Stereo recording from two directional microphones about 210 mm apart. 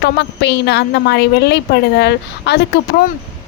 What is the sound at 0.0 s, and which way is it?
Speech, 55° left (ahead or behind).